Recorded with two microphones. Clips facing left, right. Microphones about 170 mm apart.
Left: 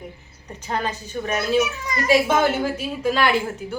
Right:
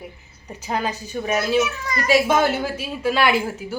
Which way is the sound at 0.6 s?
10° right (ahead or behind).